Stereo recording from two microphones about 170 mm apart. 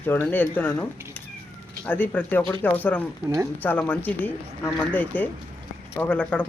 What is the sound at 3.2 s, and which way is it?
Speech, 20° right (ahead or behind).